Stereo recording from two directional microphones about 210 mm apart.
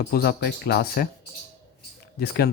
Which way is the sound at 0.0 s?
50° left (ahead or behind).